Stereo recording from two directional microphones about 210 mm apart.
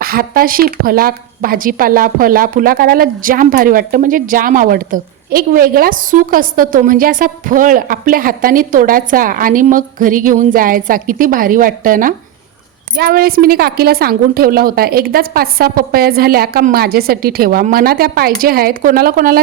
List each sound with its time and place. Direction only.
0.0 s a woman's voice: 45° right (ahead or behind)